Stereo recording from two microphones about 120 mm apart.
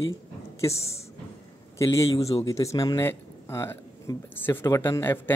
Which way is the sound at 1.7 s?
25° left (ahead or behind).